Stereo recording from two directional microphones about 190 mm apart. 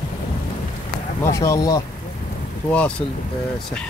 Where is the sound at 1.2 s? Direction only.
15° left (ahead or behind).